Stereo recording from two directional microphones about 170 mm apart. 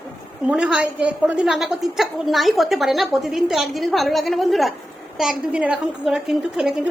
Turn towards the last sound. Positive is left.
turn(degrees=-5)  # may be behind; listen again after turning